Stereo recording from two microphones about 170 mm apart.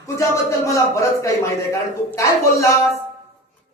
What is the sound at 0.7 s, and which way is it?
A man's voice, 15° left (ahead or behind).